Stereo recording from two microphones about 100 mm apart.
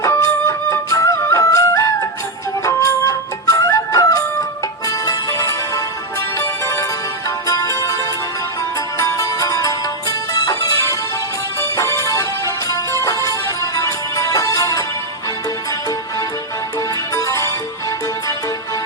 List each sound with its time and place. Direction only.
0.0 s music: 30° left (ahead or behind)
9.0 s music: 35° left (ahead or behind)
17.2 s music: 35° left (ahead or behind)